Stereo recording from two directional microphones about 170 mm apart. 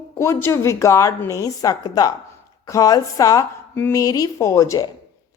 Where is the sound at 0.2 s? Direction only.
15° left (ahead or behind).